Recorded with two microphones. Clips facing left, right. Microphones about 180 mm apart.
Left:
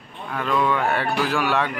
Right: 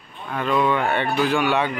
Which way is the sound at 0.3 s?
Centre (ahead or behind).